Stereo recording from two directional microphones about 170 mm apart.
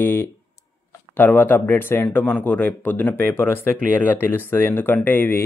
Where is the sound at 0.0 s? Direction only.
15° left (ahead or behind).